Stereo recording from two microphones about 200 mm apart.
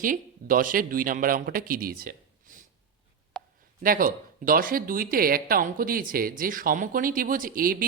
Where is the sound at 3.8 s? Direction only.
45° right (ahead or behind).